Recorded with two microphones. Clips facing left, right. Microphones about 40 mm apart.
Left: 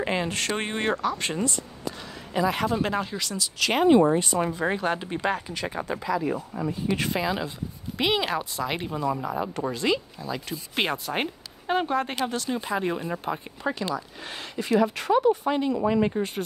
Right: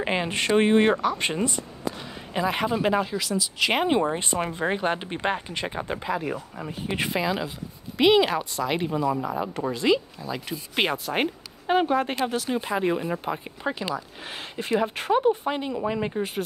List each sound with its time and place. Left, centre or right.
0.0 s speech: centre
2.7 s speech: centre
3.5 s speech: centre
4.1 s speech: right
5.9 s speech: right
7.1 s speech: centre